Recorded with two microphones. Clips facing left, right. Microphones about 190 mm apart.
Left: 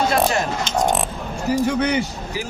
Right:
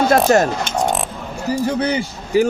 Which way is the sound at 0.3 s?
45° right (ahead or behind).